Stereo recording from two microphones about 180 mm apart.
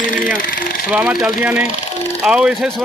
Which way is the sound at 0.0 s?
50° left (ahead or behind).